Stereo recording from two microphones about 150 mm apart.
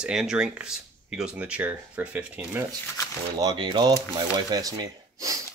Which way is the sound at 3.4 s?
25° right (ahead or behind).